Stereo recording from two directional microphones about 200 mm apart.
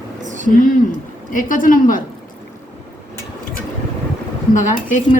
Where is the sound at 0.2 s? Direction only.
40° right (ahead or behind).